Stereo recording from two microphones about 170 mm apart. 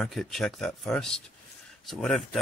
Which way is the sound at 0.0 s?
Centre (ahead or behind).